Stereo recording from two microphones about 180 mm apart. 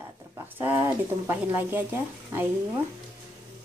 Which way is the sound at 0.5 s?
15° right (ahead or behind).